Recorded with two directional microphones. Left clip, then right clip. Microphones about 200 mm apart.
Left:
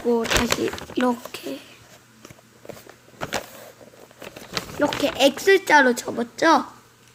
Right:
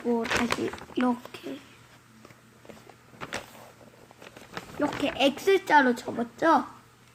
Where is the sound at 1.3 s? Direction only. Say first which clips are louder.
Left 7 dB; 20° left (ahead or behind).